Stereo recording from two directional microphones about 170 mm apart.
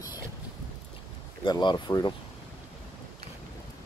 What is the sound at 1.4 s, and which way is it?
Speech, 25° left (ahead or behind).